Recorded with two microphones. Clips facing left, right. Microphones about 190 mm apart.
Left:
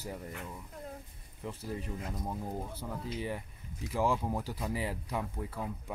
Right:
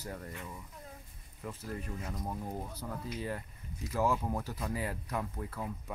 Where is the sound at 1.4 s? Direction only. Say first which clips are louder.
Left 2 dB; 15° left (ahead or behind).